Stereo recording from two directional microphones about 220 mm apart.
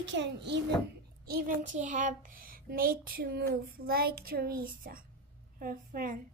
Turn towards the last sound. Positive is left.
turn(degrees=-40)  # may be behind; listen again after turning